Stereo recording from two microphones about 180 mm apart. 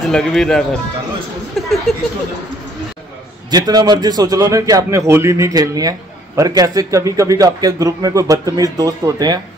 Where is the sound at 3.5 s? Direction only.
20° right (ahead or behind).